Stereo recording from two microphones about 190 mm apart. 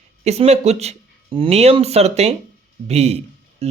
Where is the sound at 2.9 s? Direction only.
35° right (ahead or behind).